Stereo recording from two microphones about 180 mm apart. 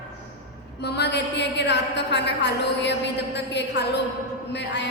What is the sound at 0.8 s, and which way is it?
A woman's voice, 65° left (ahead or behind).